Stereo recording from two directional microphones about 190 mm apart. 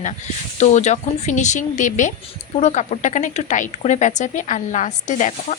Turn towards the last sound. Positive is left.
turn(degrees=40)  # may be behind; listen again after turning